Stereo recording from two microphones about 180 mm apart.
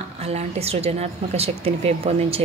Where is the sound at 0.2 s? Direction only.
35° right (ahead or behind).